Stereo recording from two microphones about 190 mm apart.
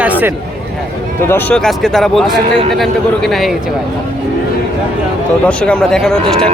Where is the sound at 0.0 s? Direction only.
10° right (ahead or behind).